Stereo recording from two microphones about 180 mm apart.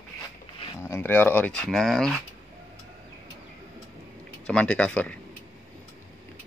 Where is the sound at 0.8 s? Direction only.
15° left (ahead or behind).